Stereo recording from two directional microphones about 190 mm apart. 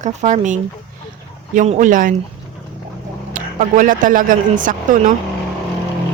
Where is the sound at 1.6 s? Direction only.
40° right (ahead or behind).